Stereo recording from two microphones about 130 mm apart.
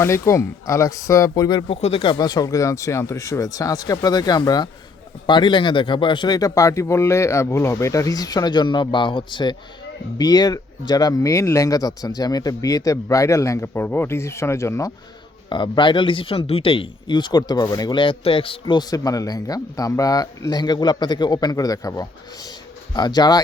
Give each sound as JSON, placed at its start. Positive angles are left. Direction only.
{"t": 0.0, "sound": "speech", "side_deg": 20}
{"t": 1.6, "sound": "speech", "side_deg": 50}
{"t": 2.1, "sound": "speech", "side_deg": 30}
{"t": 15.4, "sound": "speech", "side_deg": 35}
{"t": 18.8, "sound": "speech", "side_deg": 30}